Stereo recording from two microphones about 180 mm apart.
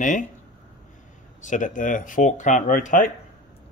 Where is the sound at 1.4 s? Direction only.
45° left (ahead or behind).